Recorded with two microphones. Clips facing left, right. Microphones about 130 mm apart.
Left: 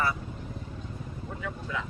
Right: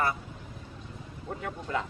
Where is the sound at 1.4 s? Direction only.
45° right (ahead or behind).